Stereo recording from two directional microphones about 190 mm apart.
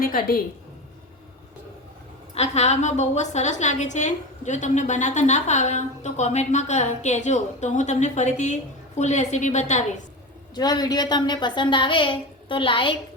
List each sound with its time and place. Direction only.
0.0 s a woman's voice: 50° left (ahead or behind)
2.3 s a woman's voice: 35° left (ahead or behind)
10.5 s a woman's voice: 20° left (ahead or behind)